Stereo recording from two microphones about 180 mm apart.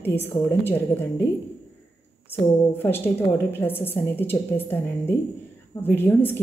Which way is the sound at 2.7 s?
10° left (ahead or behind).